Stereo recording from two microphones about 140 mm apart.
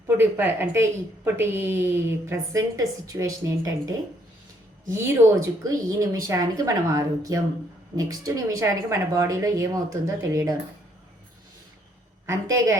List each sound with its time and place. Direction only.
0.2 s a woman's voice: 15° right (ahead or behind)
12.2 s a woman's voice: 25° right (ahead or behind)